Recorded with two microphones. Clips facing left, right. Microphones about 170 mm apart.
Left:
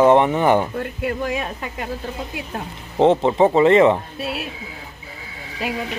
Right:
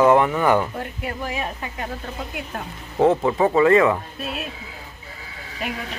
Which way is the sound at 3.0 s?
25° left (ahead or behind).